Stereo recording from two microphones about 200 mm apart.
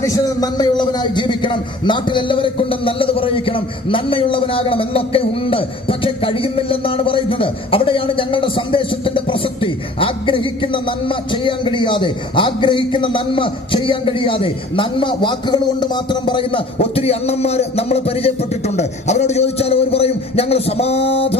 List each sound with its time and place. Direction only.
0.0 s a man's voice: 20° left (ahead or behind)